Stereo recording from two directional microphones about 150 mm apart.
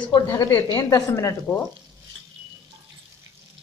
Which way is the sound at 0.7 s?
25° left (ahead or behind).